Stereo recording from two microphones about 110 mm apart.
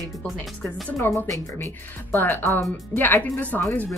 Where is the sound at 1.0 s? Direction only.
20° left (ahead or behind).